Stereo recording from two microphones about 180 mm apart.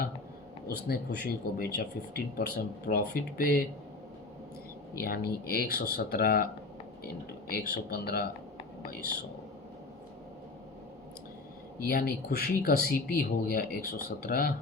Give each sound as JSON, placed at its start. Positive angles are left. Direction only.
{"t": 0.7, "sound": "speech", "side_deg": 60}
{"t": 4.9, "sound": "speech", "side_deg": 55}
{"t": 11.8, "sound": "speech", "side_deg": 55}